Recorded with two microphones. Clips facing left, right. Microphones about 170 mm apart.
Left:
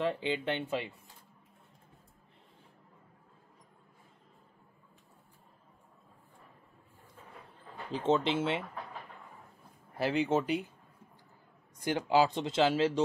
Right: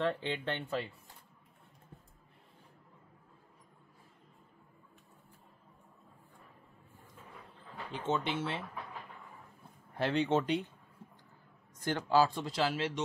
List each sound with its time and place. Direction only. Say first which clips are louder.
0.0 s speech: left 2 dB; 10° left (ahead or behind)
7.9 s speech: left 6 dB; 30° left (ahead or behind)
9.9 s speech: left 1 dB; 5° left (ahead or behind)
11.8 s speech: left 1 dB; 15° left (ahead or behind)